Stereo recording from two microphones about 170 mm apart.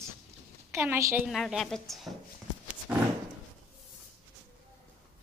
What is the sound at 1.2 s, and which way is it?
Speech, centre (ahead or behind).